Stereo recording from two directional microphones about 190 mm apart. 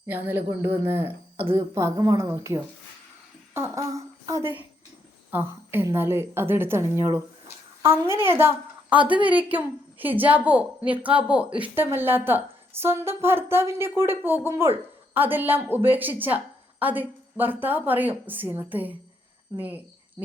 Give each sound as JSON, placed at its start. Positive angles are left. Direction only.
{"t": 0.0, "sound": "a woman's voice", "side_deg": -10}
{"t": 1.4, "sound": "a woman's voice", "side_deg": -25}